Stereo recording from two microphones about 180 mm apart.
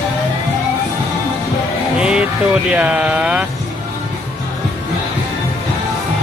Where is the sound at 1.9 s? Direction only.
5° right (ahead or behind).